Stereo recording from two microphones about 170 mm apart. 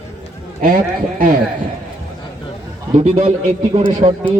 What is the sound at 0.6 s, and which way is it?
Speech, 55° right (ahead or behind).